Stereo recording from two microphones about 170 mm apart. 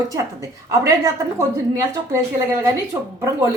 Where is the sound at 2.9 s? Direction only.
25° right (ahead or behind).